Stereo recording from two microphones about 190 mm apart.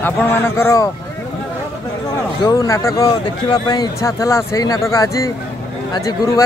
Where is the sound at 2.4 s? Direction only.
15° left (ahead or behind).